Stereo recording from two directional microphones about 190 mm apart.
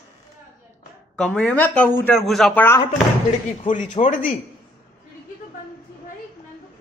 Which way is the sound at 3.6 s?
40° left (ahead or behind).